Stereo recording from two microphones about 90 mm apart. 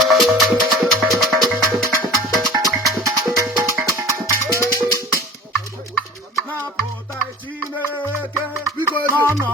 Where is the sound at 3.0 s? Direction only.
35° right (ahead or behind).